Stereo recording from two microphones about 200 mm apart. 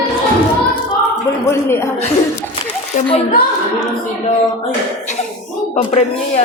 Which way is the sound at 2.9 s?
40° left (ahead or behind).